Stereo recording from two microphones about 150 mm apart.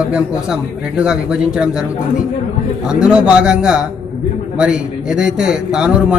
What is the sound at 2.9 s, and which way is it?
Speech, 5° right (ahead or behind).